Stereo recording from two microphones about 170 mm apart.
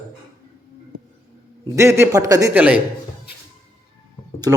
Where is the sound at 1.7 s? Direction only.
15° right (ahead or behind).